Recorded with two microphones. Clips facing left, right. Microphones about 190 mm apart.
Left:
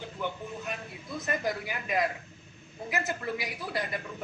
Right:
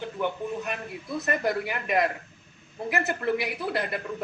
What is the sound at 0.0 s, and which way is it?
A man's voice, 60° right (ahead or behind).